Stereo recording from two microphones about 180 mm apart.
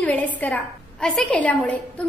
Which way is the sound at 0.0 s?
10° left (ahead or behind).